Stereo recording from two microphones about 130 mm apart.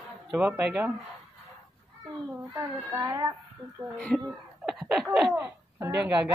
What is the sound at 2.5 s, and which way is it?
Speech, 25° right (ahead or behind).